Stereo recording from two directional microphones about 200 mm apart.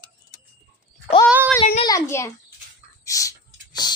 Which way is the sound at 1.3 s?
5° right (ahead or behind).